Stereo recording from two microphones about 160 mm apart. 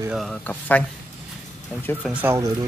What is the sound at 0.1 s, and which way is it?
Speech, 5° left (ahead or behind).